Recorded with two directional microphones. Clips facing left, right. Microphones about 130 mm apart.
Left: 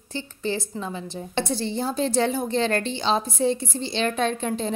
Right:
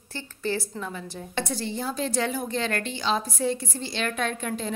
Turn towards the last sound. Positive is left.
turn(degrees=25)  # may be behind; listen again after turning